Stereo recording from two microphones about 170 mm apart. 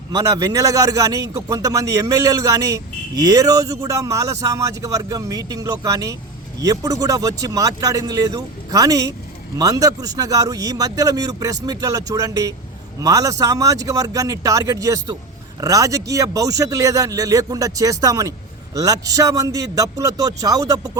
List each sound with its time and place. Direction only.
0.1 s a man's voice: 20° right (ahead or behind)